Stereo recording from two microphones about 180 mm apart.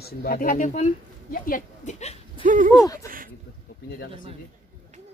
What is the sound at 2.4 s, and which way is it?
Speech, 45° right (ahead or behind).